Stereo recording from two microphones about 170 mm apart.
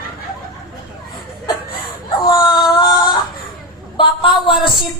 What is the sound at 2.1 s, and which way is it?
A woman's voice, 25° left (ahead or behind).